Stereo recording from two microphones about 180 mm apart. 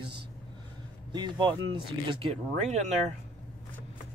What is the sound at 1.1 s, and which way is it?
Speech, 25° right (ahead or behind).